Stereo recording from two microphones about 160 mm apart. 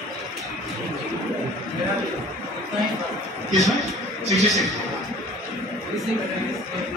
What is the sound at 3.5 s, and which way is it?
Speech, centre (ahead or behind).